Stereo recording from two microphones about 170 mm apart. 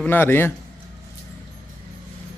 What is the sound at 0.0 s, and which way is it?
Speech, 10° left (ahead or behind).